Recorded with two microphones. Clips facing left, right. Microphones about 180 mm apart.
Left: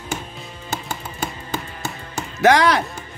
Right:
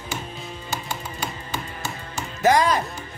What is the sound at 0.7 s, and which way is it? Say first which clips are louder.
Music: left 3 dB; 55° left (ahead or behind).